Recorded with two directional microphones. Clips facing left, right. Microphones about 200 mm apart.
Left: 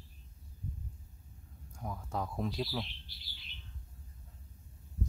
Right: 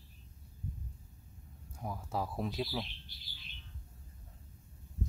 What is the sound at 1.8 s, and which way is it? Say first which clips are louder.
Speech: right 1 dB; 10° right (ahead or behind).